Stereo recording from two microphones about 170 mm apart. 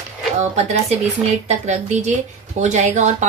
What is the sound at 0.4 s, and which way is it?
A woman's voice, 40° right (ahead or behind).